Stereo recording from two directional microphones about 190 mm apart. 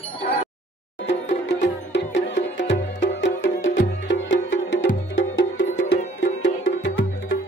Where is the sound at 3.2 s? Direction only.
85° left.